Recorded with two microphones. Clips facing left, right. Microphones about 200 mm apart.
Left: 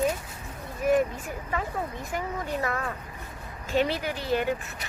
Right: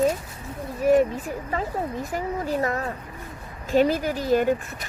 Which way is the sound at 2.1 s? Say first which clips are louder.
Right 4 dB; 35° right (ahead or behind).